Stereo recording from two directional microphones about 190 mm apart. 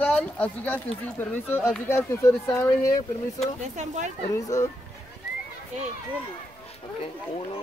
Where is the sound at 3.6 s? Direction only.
40° right (ahead or behind).